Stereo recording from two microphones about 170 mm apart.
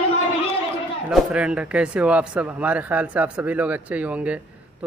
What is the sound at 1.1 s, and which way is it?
Speech, 5° right (ahead or behind).